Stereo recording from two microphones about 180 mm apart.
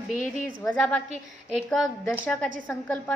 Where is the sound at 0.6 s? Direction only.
5° left (ahead or behind).